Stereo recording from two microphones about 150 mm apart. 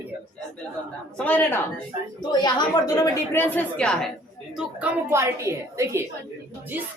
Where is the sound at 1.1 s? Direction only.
10° left (ahead or behind).